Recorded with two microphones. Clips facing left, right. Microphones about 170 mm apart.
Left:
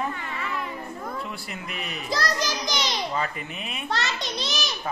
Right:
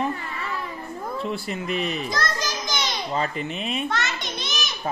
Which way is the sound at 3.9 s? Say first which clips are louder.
Even; 35° left (ahead or behind).